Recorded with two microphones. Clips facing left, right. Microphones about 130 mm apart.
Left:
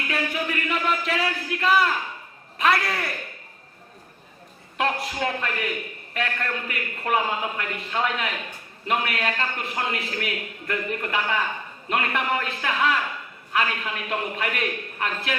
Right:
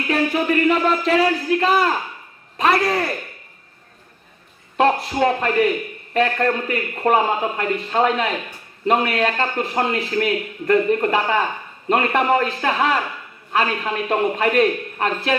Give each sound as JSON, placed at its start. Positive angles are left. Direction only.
{"t": 0.1, "sound": "a man's voice", "side_deg": -35}
{"t": 4.8, "sound": "a man's voice", "side_deg": -30}